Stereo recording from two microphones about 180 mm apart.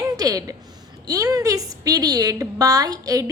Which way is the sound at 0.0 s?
20° right (ahead or behind).